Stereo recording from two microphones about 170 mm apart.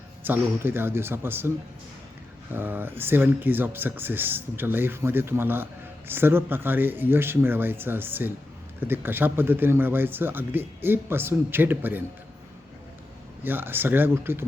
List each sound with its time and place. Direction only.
0.2 s speech: 10° right (ahead or behind)
13.4 s speech: 10° right (ahead or behind)